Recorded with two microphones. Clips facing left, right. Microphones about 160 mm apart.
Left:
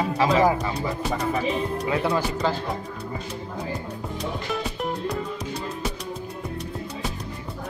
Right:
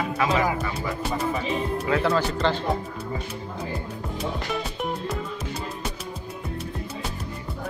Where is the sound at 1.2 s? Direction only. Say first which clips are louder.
Left 2 dB; centre (ahead or behind).